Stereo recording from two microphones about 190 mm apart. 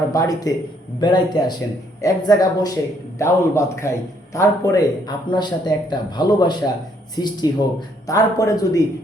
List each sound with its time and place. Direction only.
0.1 s a man's voice: 20° left (ahead or behind)